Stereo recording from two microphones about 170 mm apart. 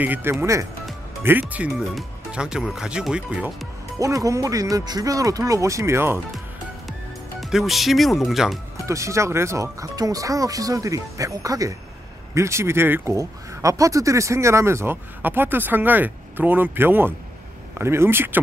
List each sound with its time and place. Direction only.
0.0 s speech: 10° right (ahead or behind)
4.0 s speech: 20° right (ahead or behind)
6.9 s speech: centre (ahead or behind)
8.7 s speech: 20° right (ahead or behind)